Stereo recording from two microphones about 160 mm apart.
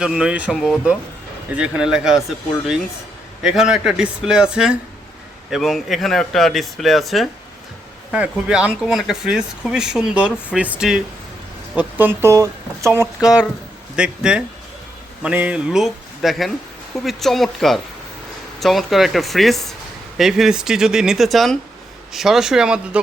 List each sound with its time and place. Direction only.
0.0 s speech: 5° right (ahead or behind)
3.4 s speech: 5° right (ahead or behind)